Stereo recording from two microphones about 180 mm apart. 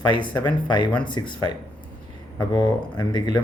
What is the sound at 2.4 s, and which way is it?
Speech, 20° left (ahead or behind).